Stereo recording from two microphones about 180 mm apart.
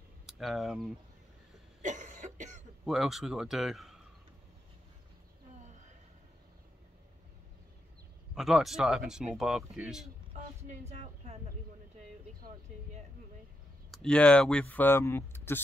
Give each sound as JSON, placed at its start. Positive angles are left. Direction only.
{"t": 0.3, "sound": "speech", "side_deg": 0}
{"t": 1.8, "sound": "cough", "side_deg": -40}
{"t": 2.8, "sound": "speech", "side_deg": 0}
{"t": 8.4, "sound": "speech", "side_deg": 0}
{"t": 10.3, "sound": "speech", "side_deg": -40}
{"t": 13.8, "sound": "speech", "side_deg": 5}